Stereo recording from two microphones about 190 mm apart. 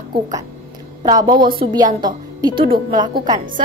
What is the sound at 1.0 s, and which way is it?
A woman's voice, 20° right (ahead or behind).